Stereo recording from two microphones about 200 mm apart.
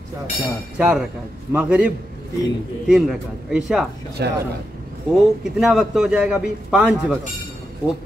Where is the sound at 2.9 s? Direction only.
5° right (ahead or behind).